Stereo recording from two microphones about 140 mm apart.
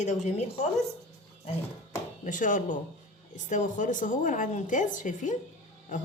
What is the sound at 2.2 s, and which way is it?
A woman's voice, 65° left (ahead or behind).